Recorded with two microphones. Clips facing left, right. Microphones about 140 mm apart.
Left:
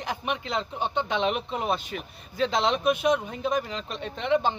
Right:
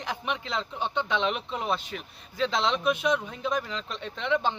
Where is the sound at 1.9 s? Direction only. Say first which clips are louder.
Left 3 dB; 50° left (ahead or behind).